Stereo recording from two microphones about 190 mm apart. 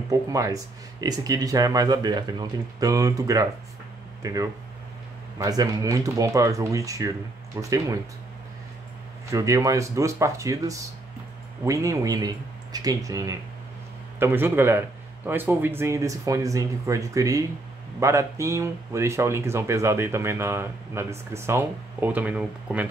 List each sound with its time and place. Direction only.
0.1 s speech: 15° right (ahead or behind)
9.3 s speech: 15° right (ahead or behind)